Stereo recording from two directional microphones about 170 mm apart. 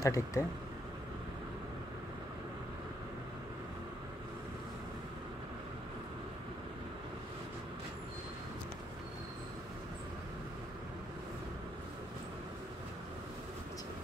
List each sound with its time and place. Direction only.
0.0 s speech: 15° left (ahead or behind)